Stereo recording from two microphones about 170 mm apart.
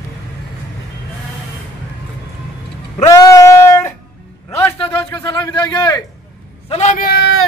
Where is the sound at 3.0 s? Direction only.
20° left (ahead or behind).